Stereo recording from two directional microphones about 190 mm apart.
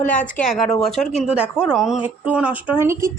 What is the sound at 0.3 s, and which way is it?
A woman's voice, centre (ahead or behind).